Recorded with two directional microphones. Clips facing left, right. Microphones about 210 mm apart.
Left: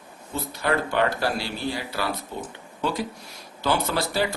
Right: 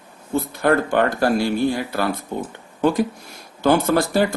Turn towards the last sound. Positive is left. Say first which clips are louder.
# right 7 dB
turn(degrees=-50)  # may be behind; listen again after turning